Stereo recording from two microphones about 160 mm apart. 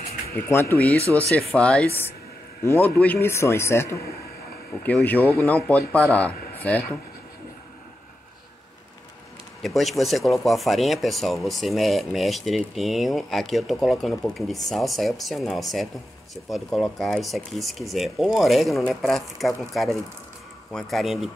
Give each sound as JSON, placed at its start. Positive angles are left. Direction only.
{"t": 0.5, "sound": "speech", "side_deg": 15}
{"t": 9.6, "sound": "speech", "side_deg": 0}